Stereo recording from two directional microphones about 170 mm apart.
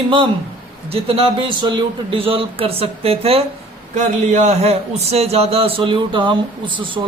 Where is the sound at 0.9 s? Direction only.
35° right (ahead or behind).